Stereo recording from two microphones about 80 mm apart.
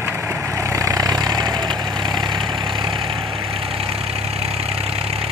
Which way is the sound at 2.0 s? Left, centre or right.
Right.